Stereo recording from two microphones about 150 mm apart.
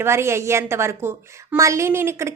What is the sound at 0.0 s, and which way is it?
A woman's voice, 20° right (ahead or behind).